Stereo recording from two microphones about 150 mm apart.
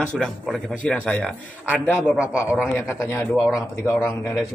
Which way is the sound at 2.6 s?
15° left (ahead or behind).